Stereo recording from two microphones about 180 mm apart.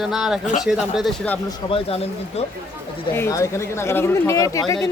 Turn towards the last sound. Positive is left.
turn(degrees=20)  # may be behind; listen again after turning